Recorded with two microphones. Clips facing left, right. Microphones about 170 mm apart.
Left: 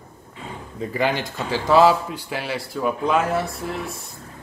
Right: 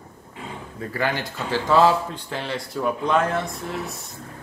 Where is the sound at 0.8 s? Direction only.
20° left (ahead or behind).